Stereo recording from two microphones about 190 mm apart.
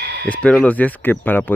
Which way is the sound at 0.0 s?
60° right (ahead or behind).